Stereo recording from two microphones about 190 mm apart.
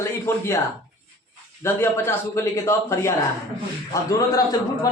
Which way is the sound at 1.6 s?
15° left (ahead or behind).